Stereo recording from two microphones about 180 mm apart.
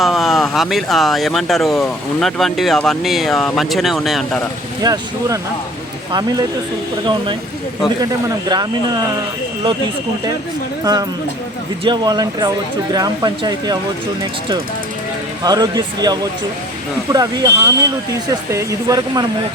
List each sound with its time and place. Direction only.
0.0 s speech: centre (ahead or behind)
4.8 s speech: 20° right (ahead or behind)
11.9 s speech: 25° right (ahead or behind)
15.4 s speech: 20° right (ahead or behind)